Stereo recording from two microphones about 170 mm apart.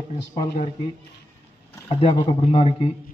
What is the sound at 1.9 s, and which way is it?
A man's voice, 30° left (ahead or behind).